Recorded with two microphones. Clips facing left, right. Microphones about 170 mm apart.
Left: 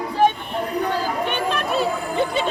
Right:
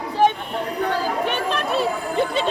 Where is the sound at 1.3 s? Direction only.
Centre (ahead or behind).